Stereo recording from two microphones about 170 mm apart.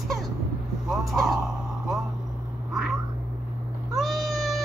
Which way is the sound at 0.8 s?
Centre (ahead or behind).